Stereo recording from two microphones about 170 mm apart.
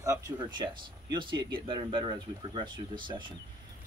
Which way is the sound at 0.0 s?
20° right (ahead or behind).